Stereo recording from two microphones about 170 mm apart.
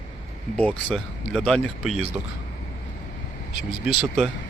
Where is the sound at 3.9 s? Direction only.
Centre (ahead or behind).